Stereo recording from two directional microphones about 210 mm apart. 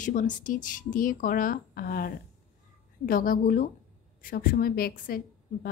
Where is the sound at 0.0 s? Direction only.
40° left (ahead or behind).